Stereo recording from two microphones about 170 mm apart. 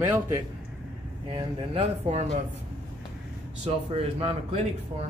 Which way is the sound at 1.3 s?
35° right (ahead or behind).